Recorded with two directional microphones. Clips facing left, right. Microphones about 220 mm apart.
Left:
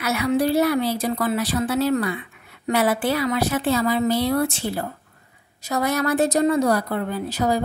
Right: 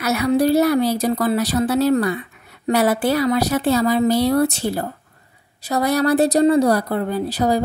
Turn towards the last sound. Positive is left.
turn(degrees=-35)  # may be behind; listen again after turning